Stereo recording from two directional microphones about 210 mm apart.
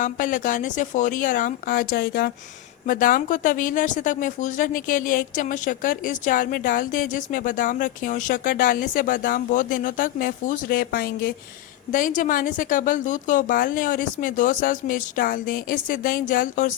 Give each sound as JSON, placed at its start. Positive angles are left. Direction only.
{"t": 0.0, "sound": "speech", "side_deg": 40}